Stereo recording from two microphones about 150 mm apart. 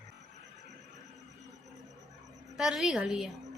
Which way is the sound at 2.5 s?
Centre (ahead or behind).